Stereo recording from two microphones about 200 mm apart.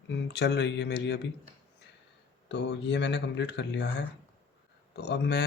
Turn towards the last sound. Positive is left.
turn(degrees=60)  # may be behind; listen again after turning